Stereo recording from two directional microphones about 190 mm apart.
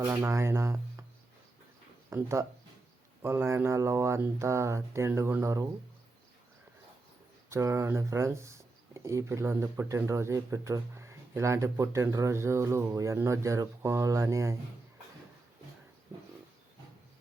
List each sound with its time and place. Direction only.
0.1 s speech: 15° right (ahead or behind)
2.0 s speech: 15° right (ahead or behind)
7.5 s speech: 15° right (ahead or behind)